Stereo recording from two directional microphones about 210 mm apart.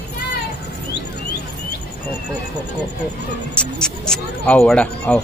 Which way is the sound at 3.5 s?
5° left (ahead or behind).